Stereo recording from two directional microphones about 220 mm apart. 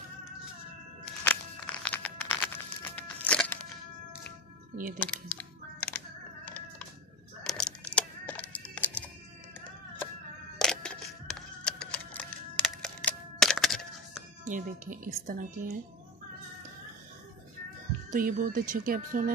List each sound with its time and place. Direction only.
1.2 s a sound: 5° left (ahead or behind)
4.9 s typing: 5° left (ahead or behind)
7.4 s music: 5° left (ahead or behind)
10.6 s a sound: 5° left (ahead or behind)
14.5 s speech: 35° right (ahead or behind)
18.1 s speech: 40° right (ahead or behind)